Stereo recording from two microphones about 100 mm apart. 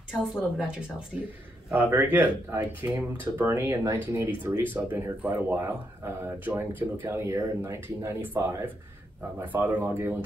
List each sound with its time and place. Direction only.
0.1 s speech: 10° right (ahead or behind)
1.9 s speech: 20° right (ahead or behind)